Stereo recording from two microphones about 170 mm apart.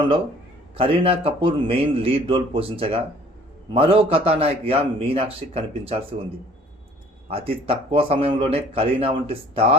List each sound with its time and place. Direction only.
0.8 s speech: 35° right (ahead or behind)
7.3 s speech: 35° right (ahead or behind)